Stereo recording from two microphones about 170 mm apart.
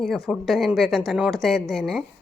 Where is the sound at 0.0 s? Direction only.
Centre (ahead or behind).